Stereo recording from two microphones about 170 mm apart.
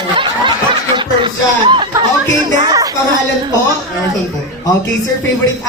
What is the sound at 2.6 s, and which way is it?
Music, 20° right (ahead or behind).